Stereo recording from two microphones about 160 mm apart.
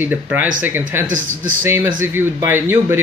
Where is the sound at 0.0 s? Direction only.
10° right (ahead or behind).